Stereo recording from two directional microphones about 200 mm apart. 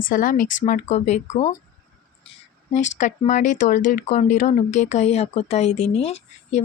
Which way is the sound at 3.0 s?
40° left (ahead or behind).